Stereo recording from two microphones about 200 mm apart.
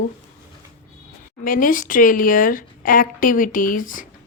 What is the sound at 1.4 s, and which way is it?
Speech, 45° left (ahead or behind).